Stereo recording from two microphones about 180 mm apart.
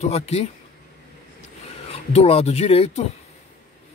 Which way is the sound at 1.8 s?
35° left (ahead or behind).